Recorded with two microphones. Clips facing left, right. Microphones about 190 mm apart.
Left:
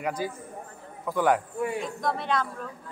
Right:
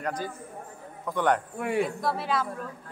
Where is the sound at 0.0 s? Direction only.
10° left (ahead or behind).